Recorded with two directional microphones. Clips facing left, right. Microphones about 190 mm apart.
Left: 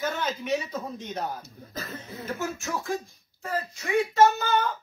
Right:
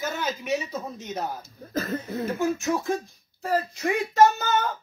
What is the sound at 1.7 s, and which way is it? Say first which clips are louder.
Speech: right 10 dB; 55° right (ahead or behind).